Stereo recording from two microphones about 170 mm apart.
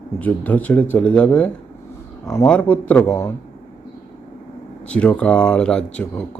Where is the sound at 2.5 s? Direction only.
10° left (ahead or behind).